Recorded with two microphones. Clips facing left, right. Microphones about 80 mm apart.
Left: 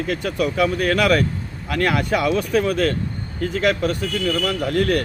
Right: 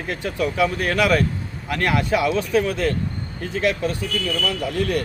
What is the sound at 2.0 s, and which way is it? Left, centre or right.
Speech, left.